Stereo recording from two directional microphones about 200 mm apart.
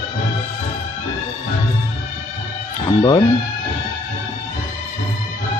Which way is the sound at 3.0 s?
20° left (ahead or behind).